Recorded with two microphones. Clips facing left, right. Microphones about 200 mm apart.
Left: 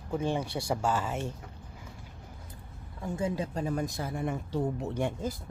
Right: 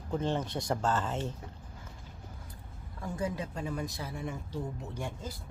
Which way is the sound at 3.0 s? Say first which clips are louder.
Left 3 dB; 25° left (ahead or behind).